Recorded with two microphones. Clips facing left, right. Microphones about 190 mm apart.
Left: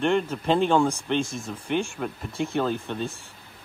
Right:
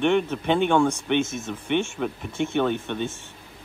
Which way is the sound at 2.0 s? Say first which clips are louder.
Right 3 dB; centre (ahead or behind).